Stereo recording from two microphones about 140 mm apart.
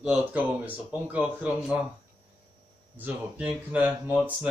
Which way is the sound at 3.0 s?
10° right (ahead or behind).